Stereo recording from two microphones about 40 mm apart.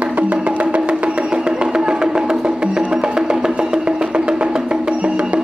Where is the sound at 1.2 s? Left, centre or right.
Centre.